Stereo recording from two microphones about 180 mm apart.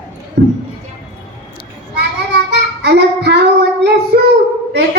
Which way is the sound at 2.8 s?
70° right (ahead or behind).